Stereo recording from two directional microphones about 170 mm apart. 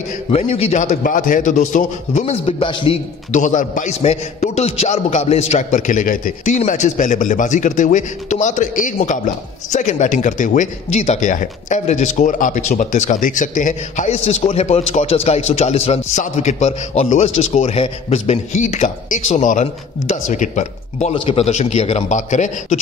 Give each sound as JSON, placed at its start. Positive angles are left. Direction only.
{"t": 0.3, "sound": "a man's voice", "side_deg": 40}
{"t": 3.3, "sound": "a man's voice", "side_deg": 45}
{"t": 21.1, "sound": "a man's voice", "side_deg": 35}